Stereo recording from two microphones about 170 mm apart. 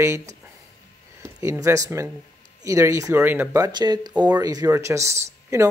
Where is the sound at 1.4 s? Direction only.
20° right (ahead or behind).